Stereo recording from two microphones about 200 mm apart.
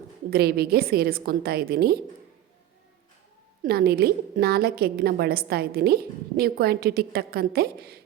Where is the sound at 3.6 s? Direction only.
50° right (ahead or behind).